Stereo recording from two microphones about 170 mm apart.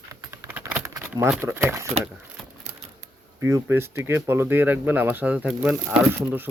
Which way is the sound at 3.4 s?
15° right (ahead or behind).